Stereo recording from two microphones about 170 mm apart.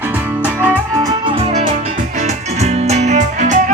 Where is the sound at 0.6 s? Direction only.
15° right (ahead or behind).